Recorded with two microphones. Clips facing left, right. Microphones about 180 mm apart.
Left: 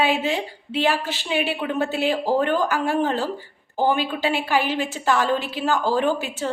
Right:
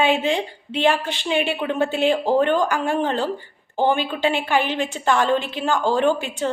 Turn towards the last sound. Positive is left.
turn(degrees=5)  # may be behind; listen again after turning